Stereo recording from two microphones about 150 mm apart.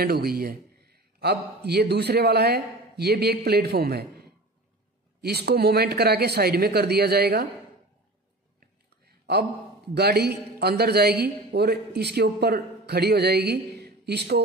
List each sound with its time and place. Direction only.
0.0 s a man's voice: 90° right
8.5 s a sound: 90° right
9.9 s a man's voice: 90° right